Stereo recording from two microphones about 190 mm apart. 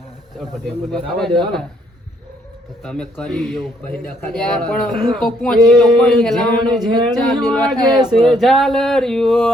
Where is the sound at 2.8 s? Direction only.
5° left (ahead or behind).